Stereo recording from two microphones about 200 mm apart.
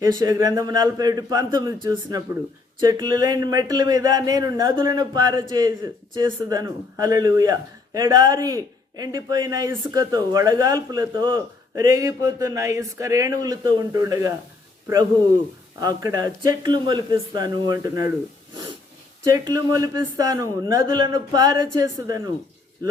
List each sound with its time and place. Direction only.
0.0 s speech: 20° right (ahead or behind)
15.8 s speech: 20° right (ahead or behind)
19.2 s speech: 20° right (ahead or behind)